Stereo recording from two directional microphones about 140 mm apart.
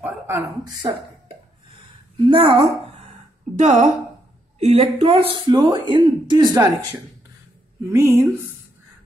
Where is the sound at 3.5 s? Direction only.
60° right (ahead or behind).